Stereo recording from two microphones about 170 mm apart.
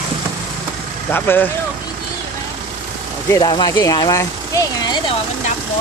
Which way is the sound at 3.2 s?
20° left (ahead or behind).